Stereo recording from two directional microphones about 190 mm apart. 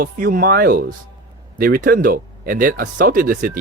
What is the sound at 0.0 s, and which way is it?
Speech, 50° right (ahead or behind).